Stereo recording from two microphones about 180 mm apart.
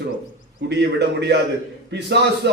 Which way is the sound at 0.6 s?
70° right (ahead or behind).